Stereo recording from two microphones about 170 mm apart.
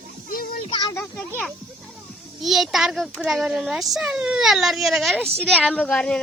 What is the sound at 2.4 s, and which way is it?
Speech, centre (ahead or behind).